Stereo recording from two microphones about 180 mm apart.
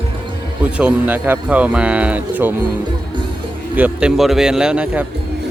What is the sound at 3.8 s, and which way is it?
Speech, 5° right (ahead or behind).